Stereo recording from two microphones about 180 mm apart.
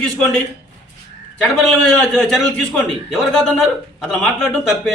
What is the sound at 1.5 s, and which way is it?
A man's voice, centre (ahead or behind).